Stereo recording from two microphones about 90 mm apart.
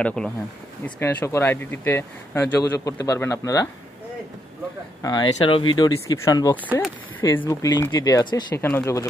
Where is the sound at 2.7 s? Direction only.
40° left (ahead or behind).